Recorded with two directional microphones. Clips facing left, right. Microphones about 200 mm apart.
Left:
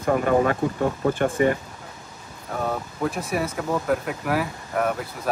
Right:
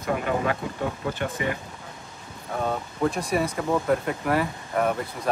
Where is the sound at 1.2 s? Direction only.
50° left (ahead or behind).